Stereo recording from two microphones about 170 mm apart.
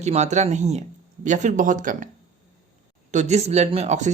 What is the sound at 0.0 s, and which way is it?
Speech, 40° right (ahead or behind).